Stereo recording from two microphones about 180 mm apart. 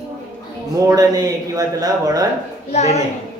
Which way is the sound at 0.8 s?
20° right (ahead or behind).